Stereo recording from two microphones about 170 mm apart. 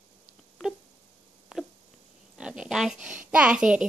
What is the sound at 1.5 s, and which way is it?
Cat, 5° right (ahead or behind).